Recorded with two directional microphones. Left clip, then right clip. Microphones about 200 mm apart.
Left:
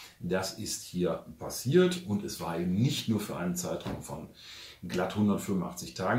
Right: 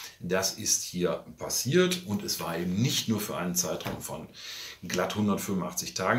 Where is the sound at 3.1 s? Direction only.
5° left (ahead or behind).